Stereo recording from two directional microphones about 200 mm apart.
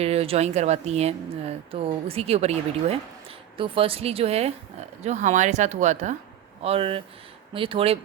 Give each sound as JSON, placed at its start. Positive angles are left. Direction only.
{"t": 0.0, "sound": "a woman's voice", "side_deg": -30}
{"t": 3.6, "sound": "a woman's voice", "side_deg": -25}